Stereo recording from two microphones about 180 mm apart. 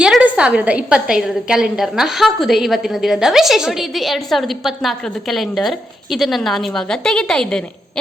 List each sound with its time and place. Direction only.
0.0 s a woman's voice: 5° right (ahead or behind)